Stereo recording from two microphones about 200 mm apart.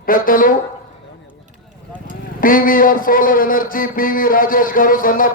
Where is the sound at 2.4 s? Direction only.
45° left (ahead or behind).